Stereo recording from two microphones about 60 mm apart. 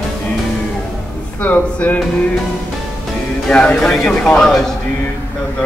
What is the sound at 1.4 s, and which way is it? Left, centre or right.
Speech, left.